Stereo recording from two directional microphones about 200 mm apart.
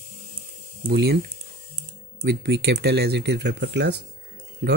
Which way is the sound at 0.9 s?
55° right (ahead or behind).